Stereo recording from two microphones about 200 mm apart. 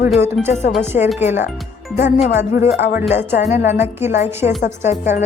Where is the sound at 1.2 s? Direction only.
35° left (ahead or behind).